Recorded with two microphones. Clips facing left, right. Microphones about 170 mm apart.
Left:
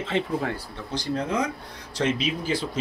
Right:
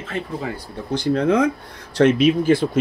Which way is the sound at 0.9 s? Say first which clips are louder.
Right 9 dB; 65° right (ahead or behind).